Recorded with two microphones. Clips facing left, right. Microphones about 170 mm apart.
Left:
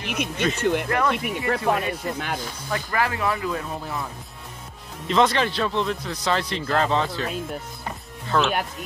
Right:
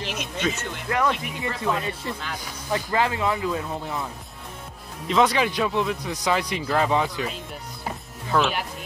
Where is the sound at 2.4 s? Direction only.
20° right (ahead or behind).